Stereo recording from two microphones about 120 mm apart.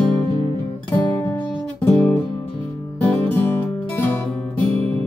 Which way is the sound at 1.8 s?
15° left (ahead or behind).